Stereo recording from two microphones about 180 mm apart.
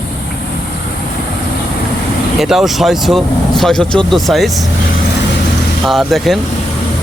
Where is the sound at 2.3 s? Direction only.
Centre (ahead or behind).